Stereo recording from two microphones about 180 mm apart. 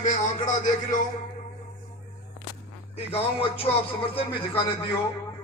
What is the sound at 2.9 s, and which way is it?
Speech, 30° left (ahead or behind).